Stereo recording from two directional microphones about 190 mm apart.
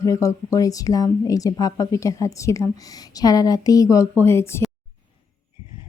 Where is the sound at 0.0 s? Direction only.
15° left (ahead or behind).